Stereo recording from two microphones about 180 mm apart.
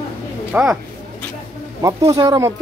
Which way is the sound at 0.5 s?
5° right (ahead or behind).